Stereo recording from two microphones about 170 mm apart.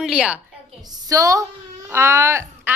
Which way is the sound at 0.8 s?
20° right (ahead or behind).